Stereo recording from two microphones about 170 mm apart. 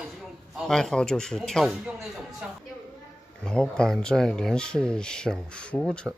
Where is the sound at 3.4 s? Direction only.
5° left (ahead or behind).